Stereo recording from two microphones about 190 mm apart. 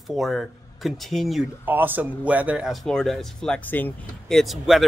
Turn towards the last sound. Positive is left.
turn(degrees=0)  # may be behind; listen again after turning